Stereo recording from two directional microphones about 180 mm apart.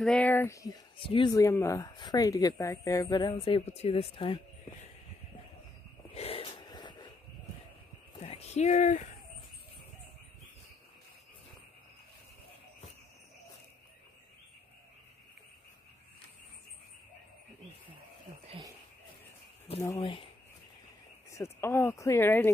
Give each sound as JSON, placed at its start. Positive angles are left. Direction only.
{"t": 0.0, "sound": "speech", "side_deg": 5}
{"t": 0.9, "sound": "speech", "side_deg": 30}
{"t": 6.1, "sound": "wheeze", "side_deg": 30}
{"t": 8.2, "sound": "speech", "side_deg": 35}
{"t": 20.0, "sound": "speech", "side_deg": 30}
{"t": 21.3, "sound": "speech", "side_deg": 15}